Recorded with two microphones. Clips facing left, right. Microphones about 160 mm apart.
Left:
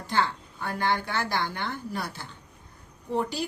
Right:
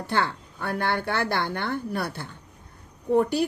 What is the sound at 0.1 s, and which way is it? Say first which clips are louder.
Speech: even; 60° right (ahead or behind).